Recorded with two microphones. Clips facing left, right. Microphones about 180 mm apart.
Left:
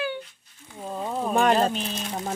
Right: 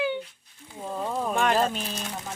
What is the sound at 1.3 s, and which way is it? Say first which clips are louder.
Speech: left 5 dB; 35° left (ahead or behind).